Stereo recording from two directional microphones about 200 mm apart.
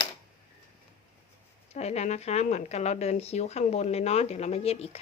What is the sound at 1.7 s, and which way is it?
Speech, 35° left (ahead or behind).